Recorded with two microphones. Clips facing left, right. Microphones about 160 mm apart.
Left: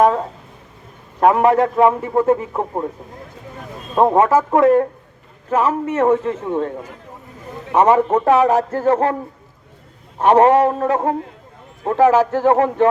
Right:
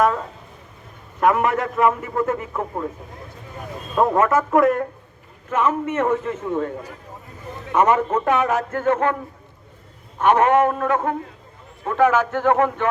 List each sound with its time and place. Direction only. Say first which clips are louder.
1.2 s a man's voice: left 5 dB; 30° left (ahead or behind)
3.9 s a man's voice: left 4 dB; 30° left (ahead or behind)
10.2 s a man's voice: left 4 dB; 35° left (ahead or behind)